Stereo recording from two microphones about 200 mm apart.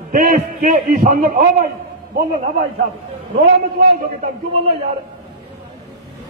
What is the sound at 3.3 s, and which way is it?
Speech, 45° right (ahead or behind).